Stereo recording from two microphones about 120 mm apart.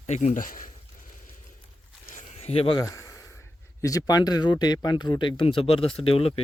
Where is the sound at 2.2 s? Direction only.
55° left (ahead or behind).